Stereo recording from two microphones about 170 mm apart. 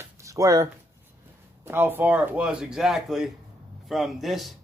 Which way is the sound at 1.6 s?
10° right (ahead or behind).